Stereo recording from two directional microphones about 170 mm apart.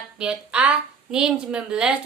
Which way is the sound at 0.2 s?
5° right (ahead or behind).